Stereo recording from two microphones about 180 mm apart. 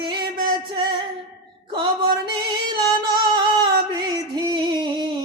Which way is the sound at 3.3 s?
25° right (ahead or behind).